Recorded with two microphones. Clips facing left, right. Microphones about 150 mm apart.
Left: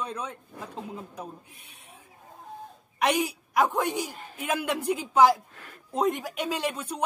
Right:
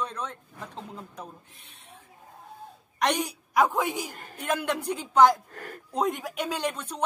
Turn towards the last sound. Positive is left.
turn(degrees=10)  # may be behind; listen again after turning